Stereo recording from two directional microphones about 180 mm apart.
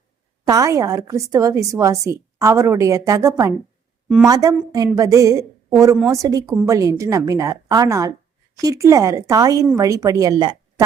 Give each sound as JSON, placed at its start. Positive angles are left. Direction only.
{"t": 0.4, "sound": "a woman's voice", "side_deg": -20}